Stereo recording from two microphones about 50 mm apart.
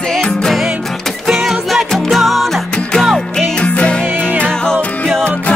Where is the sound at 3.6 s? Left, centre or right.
Left.